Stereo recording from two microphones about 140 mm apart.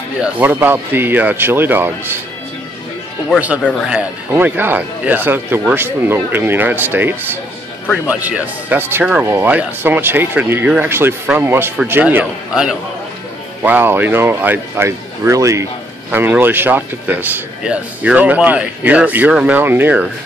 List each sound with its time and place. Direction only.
0.2 s speech: 10° right (ahead or behind)
3.3 s speech: 10° right (ahead or behind)